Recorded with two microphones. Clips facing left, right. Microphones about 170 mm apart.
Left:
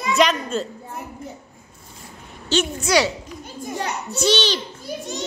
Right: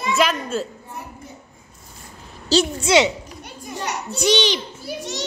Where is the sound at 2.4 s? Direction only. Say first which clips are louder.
Right 3 dB; 35° right (ahead or behind).